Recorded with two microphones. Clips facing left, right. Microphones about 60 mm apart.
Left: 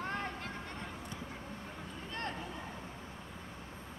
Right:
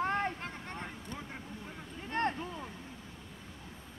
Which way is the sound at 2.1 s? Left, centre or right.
Right.